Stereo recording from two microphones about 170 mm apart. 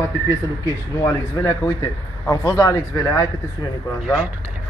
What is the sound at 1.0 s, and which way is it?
A man's voice, 15° left (ahead or behind).